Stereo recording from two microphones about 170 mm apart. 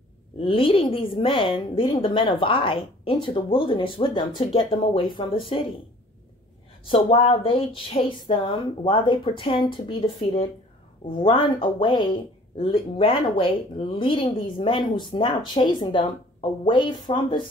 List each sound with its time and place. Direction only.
0.4 s a woman's voice: 30° left (ahead or behind)
6.9 s a woman's voice: 30° left (ahead or behind)